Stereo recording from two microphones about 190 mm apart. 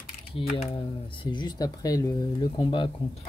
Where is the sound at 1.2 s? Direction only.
25° left (ahead or behind).